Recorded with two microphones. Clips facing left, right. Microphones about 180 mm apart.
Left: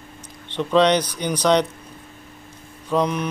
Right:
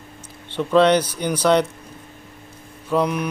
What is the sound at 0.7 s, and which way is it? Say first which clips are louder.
Speech: right 2 dB; 10° right (ahead or behind).